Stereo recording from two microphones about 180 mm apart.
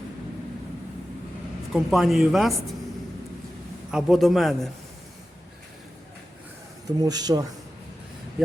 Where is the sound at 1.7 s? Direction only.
Centre (ahead or behind).